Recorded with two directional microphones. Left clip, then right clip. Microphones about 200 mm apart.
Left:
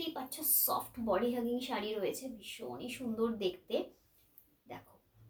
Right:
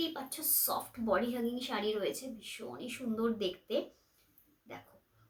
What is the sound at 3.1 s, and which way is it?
Speech, 15° right (ahead or behind).